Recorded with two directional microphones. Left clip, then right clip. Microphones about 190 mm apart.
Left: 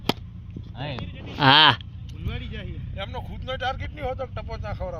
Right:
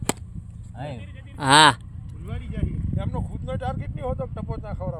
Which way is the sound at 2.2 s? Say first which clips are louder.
Even; 60° right (ahead or behind).